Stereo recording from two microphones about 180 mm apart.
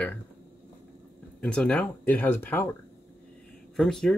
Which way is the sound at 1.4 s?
5° left (ahead or behind).